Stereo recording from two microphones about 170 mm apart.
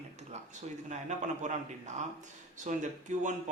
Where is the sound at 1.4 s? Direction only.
45° right (ahead or behind).